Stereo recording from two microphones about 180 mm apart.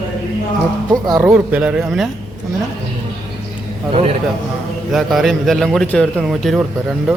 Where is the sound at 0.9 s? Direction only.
20° right (ahead or behind).